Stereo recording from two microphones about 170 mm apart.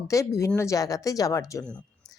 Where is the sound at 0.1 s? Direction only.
20° left (ahead or behind).